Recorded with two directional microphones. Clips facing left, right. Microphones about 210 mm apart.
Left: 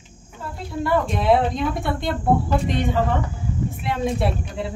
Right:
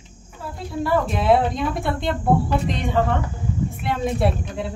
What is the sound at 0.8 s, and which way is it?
Speech, centre (ahead or behind).